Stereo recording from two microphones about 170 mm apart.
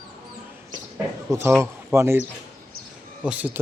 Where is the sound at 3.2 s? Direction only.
10° right (ahead or behind).